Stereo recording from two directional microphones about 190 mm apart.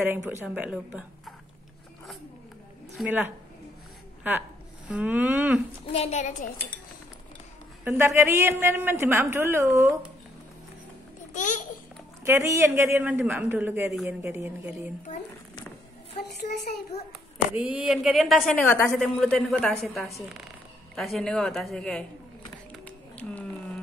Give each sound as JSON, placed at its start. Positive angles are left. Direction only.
{"t": 0.0, "sound": "a woman's voice", "side_deg": -10}
{"t": 3.0, "sound": "a woman's voice", "side_deg": -10}
{"t": 5.9, "sound": "a woman's voice", "side_deg": 35}
{"t": 7.8, "sound": "a woman's voice", "side_deg": -15}
{"t": 11.3, "sound": "babbling", "side_deg": 40}
{"t": 12.3, "sound": "a woman's voice", "side_deg": -15}
{"t": 17.6, "sound": "a woman's voice", "side_deg": -5}
{"t": 18.5, "sound": "a woman's voice", "side_deg": 10}
{"t": 22.8, "sound": "a sound", "side_deg": 5}